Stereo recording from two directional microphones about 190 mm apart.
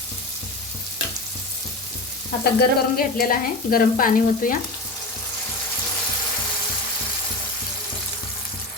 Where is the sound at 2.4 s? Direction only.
55° left (ahead or behind).